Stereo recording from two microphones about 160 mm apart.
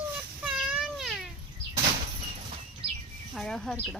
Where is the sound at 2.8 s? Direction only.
35° right (ahead or behind).